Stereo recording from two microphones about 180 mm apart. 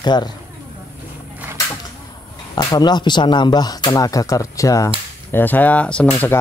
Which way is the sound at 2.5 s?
20° left (ahead or behind).